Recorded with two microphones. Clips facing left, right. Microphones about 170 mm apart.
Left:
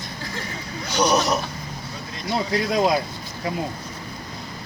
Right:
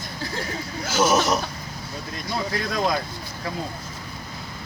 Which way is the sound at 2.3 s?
15° left (ahead or behind).